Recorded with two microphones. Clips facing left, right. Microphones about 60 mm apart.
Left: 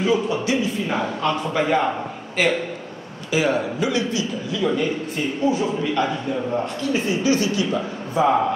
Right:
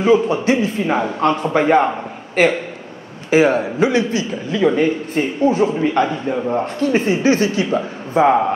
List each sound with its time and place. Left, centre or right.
0.0 s a man's voice: right